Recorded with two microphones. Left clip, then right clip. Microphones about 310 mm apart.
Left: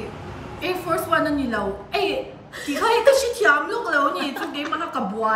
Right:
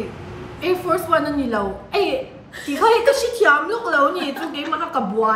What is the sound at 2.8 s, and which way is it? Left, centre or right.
A woman's voice, centre.